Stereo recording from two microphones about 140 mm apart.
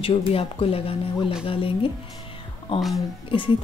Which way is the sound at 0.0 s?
40° left (ahead or behind).